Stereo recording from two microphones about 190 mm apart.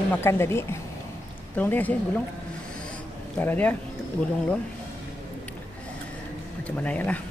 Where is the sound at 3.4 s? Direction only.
10° left (ahead or behind).